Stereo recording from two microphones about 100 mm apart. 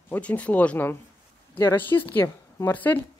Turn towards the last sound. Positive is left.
turn(degrees=20)  # may be behind; listen again after turning